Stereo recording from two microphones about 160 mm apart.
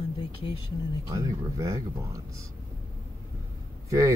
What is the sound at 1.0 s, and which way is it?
Speech, 20° right (ahead or behind).